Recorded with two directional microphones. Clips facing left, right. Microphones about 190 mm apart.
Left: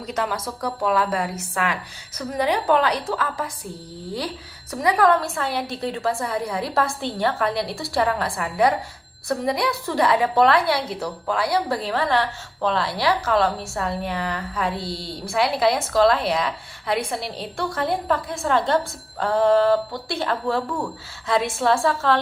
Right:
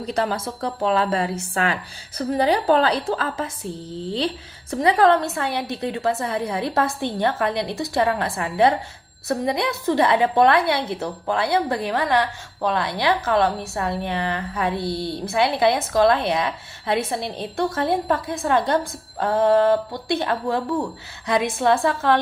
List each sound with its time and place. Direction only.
0.0 s a woman's voice: 30° right (ahead or behind)